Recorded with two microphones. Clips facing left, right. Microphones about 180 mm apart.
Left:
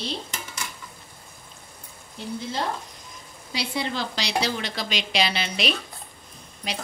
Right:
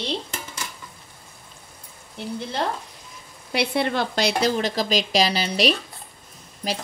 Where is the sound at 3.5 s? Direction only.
60° right (ahead or behind); by 5.7 s 35° right (ahead or behind).